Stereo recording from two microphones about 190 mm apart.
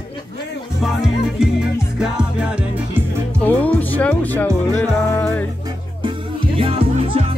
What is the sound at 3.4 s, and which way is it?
Music, 10° left (ahead or behind).